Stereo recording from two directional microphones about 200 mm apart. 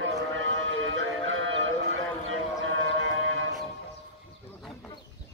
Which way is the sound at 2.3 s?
75° right (ahead or behind).